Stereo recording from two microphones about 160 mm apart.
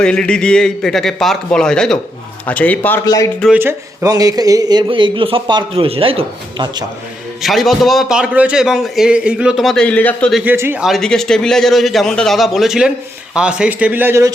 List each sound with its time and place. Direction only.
0.0 s a man's voice: 5° left (ahead or behind)
3.5 s a man's voice: 15° right (ahead or behind); by 6.8 s 30° right (ahead or behind)
7.4 s a man's voice: centre (ahead or behind)
10.4 s speech: 15° right (ahead or behind)
10.8 s a man's voice: centre (ahead or behind)